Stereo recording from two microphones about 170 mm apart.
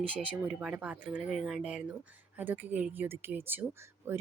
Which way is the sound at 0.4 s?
5° right (ahead or behind).